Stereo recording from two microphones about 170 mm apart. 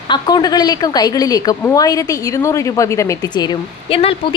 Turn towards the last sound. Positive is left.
turn(degrees=35)  # may be behind; listen again after turning